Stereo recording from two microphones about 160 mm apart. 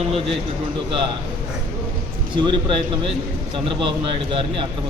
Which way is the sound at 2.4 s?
30° right (ahead or behind).